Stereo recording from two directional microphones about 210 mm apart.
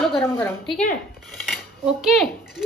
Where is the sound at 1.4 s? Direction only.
Centre (ahead or behind).